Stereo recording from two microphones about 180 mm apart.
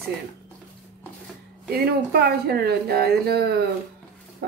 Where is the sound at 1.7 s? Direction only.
60° right (ahead or behind).